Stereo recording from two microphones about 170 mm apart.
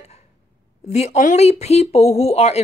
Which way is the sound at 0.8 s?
40° left (ahead or behind).